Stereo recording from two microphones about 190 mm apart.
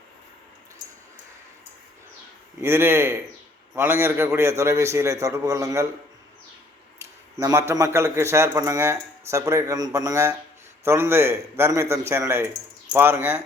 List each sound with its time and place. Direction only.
2.6 s a man's voice: 10° right (ahead or behind)
7.0 s a sound: 15° right (ahead or behind)
7.7 s a man's voice: 15° right (ahead or behind)